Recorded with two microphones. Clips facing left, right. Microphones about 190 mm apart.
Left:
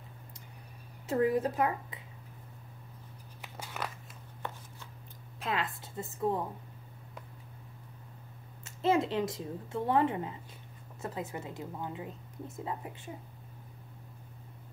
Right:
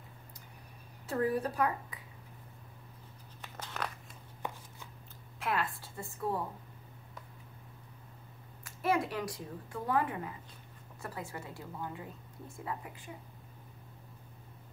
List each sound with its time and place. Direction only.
1.0 s a woman's voice: 20° left (ahead or behind)
3.5 s a sound: 10° left (ahead or behind)
5.4 s a woman's voice: 20° left (ahead or behind)
8.6 s a woman's voice: 25° left (ahead or behind)